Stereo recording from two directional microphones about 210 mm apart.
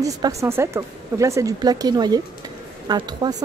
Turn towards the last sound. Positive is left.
turn(degrees=-20)  # may be behind; listen again after turning